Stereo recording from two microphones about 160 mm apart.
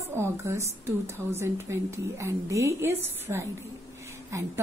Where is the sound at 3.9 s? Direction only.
15° right (ahead or behind).